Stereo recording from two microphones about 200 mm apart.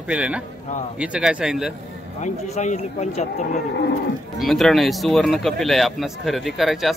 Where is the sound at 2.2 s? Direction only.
35° left (ahead or behind).